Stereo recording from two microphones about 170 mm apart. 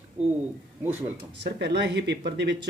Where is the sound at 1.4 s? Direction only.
80° right.